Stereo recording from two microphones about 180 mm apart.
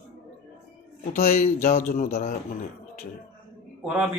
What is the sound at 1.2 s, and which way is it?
Speech, 45° left (ahead or behind).